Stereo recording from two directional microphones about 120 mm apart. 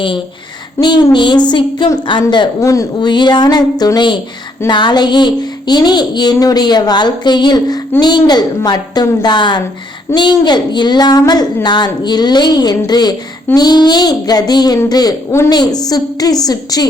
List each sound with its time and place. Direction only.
0.8 s speech: 35° left (ahead or behind)
2.6 s speech: 25° left (ahead or behind)
3.1 s speech: 40° left (ahead or behind)